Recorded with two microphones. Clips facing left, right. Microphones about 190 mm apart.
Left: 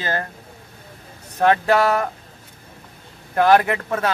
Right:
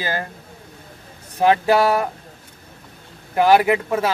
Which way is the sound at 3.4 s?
10° right (ahead or behind).